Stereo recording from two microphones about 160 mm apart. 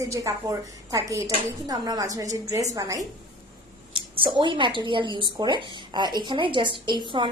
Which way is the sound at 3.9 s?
30° right (ahead or behind).